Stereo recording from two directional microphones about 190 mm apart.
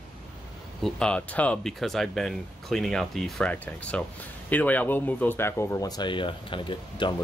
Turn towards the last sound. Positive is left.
turn(degrees=25)  # may be behind; listen again after turning